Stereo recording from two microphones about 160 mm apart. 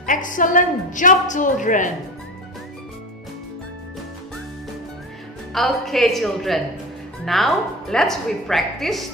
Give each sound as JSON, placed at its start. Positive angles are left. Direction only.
{"t": 0.0, "sound": "a woman's voice", "side_deg": 55}
{"t": 5.5, "sound": "a woman's voice", "side_deg": 0}